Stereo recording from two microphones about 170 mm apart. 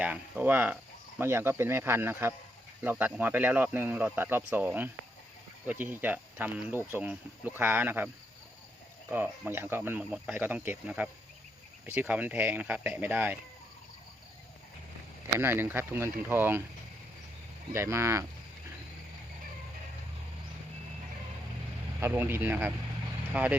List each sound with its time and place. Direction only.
0.0 s speech: 10° right (ahead or behind)
15.4 s speech: 15° right (ahead or behind)
17.7 s speech: 15° right (ahead or behind)
22.0 s speech: 15° right (ahead or behind)